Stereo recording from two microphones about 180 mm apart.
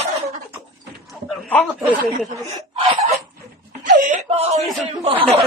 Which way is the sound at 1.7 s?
10° right (ahead or behind).